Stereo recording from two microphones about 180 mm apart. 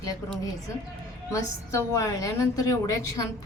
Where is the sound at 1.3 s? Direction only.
15° left (ahead or behind).